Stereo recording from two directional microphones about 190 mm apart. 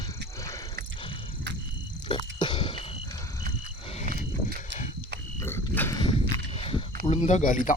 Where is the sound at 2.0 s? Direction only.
25° left (ahead or behind).